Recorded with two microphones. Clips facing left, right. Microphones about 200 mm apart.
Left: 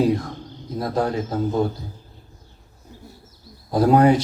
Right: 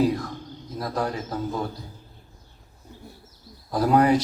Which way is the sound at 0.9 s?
25° left (ahead or behind).